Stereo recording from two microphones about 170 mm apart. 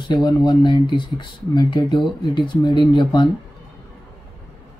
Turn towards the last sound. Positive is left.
turn(degrees=25)  # may be behind; listen again after turning